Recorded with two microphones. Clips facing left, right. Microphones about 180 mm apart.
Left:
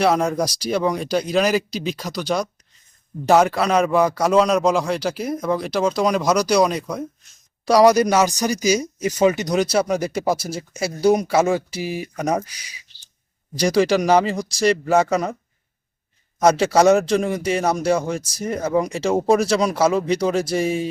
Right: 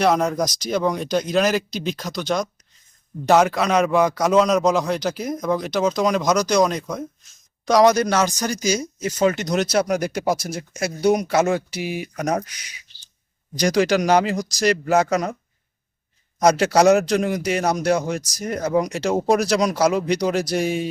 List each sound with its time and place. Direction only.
0.0 s a man's voice: 5° left (ahead or behind)
9.7 s a man's voice: centre (ahead or behind)
11.0 s speech: 30° left (ahead or behind)
11.3 s a man's voice: centre (ahead or behind)
12.5 s speech: 30° left (ahead or behind)
13.6 s a man's voice: 5° left (ahead or behind)
16.4 s a man's voice: 5° left (ahead or behind)